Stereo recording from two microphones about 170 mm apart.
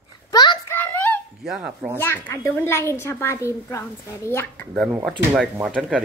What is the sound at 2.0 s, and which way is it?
A woman's voice, 15° left (ahead or behind).